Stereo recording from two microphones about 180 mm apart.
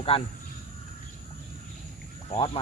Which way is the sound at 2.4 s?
30° left (ahead or behind).